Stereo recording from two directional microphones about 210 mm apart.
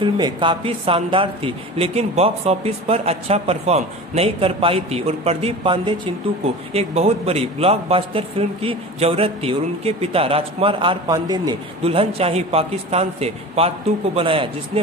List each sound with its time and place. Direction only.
0.0 s a man's voice: 20° right (ahead or behind)